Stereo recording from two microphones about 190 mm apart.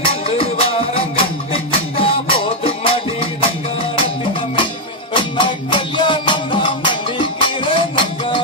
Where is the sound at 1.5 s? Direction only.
30° left (ahead or behind).